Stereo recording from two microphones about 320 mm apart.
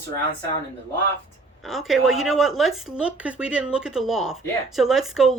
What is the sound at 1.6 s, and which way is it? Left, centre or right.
A woman's voice, centre.